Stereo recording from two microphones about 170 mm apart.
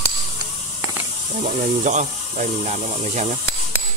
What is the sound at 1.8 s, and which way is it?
Speech, 45° right (ahead or behind).